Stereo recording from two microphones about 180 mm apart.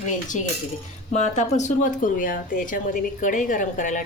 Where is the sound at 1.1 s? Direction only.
40° left (ahead or behind).